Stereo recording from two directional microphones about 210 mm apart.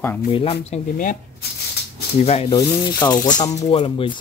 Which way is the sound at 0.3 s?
25° left (ahead or behind).